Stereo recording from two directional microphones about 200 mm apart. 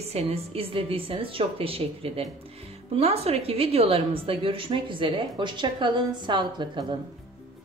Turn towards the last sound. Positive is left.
turn(degrees=-25)  # may be behind; listen again after turning